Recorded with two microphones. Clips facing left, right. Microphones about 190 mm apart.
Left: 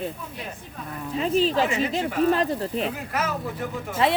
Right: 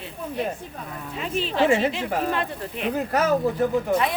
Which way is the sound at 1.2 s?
40° left (ahead or behind).